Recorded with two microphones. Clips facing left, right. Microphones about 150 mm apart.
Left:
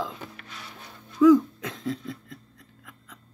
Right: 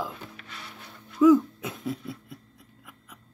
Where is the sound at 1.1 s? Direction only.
10° right (ahead or behind).